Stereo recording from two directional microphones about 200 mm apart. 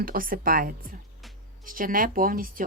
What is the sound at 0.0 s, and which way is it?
Speech, 45° right (ahead or behind).